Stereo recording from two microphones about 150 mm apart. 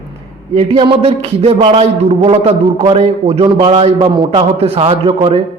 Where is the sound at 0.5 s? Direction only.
40° right (ahead or behind).